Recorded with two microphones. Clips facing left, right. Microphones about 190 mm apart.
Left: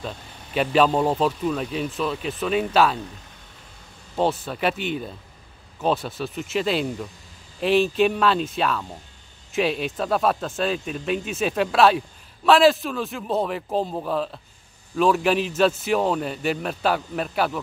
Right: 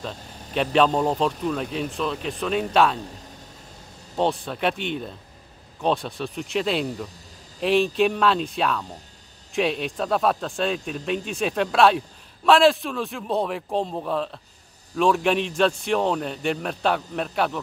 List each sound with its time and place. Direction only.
0.6 s a man's voice: 5° left (ahead or behind)
4.2 s a man's voice: 5° left (ahead or behind)